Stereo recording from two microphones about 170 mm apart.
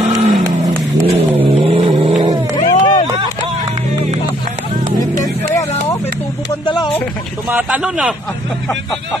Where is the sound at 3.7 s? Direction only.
40° right (ahead or behind).